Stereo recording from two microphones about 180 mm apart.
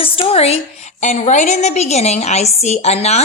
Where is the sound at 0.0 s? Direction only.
30° left (ahead or behind).